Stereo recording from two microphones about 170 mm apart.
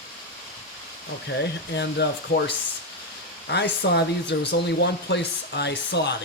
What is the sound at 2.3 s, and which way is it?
Speech, 75° left (ahead or behind).